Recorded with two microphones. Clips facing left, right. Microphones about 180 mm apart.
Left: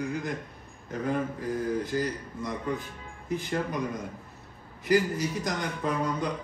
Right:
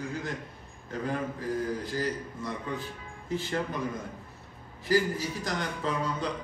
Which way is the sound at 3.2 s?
15° left (ahead or behind).